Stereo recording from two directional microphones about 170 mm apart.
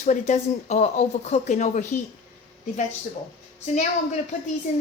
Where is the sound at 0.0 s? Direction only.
40° left (ahead or behind).